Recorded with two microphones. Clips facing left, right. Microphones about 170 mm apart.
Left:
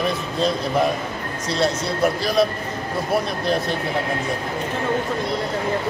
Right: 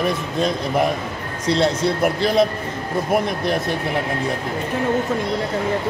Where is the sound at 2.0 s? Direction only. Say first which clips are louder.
Even; 20° right (ahead or behind).